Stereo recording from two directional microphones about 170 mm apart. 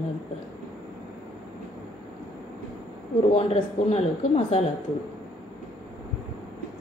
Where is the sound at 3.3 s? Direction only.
35° left (ahead or behind).